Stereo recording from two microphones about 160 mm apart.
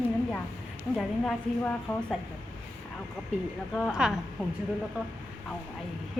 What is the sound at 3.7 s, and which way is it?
Speech, centre (ahead or behind).